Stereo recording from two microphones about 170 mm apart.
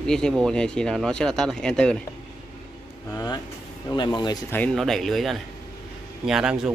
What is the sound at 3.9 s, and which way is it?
Speech, 25° left (ahead or behind).